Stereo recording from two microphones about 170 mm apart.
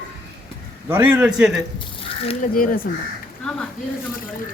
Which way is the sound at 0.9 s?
10° right (ahead or behind).